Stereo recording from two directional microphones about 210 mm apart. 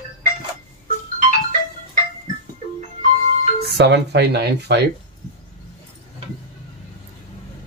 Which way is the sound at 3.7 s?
50° right (ahead or behind).